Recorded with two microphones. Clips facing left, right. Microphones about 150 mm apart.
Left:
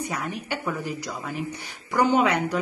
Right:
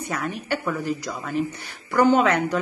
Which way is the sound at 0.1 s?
15° left (ahead or behind).